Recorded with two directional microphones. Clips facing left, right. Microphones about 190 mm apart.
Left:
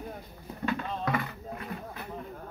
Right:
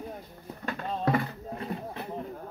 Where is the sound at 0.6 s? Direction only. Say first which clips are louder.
Right 1 dB; 40° right (ahead or behind).